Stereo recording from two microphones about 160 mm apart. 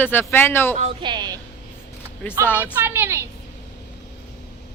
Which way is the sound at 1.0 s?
30° right (ahead or behind).